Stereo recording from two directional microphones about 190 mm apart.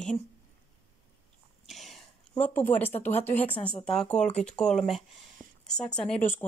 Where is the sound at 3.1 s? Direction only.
35° left (ahead or behind).